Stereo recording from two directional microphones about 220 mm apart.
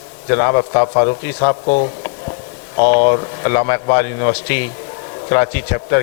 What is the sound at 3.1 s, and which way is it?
A man's voice, 20° left (ahead or behind).